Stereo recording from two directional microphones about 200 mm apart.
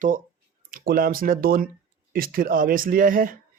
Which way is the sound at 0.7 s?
45° right (ahead or behind).